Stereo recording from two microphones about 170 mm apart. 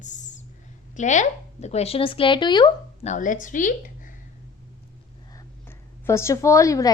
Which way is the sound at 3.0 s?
45° left (ahead or behind).